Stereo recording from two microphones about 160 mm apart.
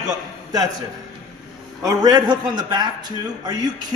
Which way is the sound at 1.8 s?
25° right (ahead or behind).